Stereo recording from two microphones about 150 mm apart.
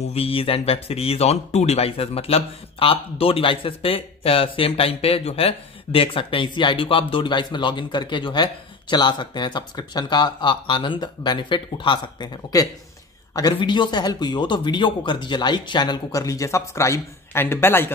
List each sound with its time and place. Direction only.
0.0 s a man's voice: 40° left (ahead or behind); by 17.9 s 15° left (ahead or behind)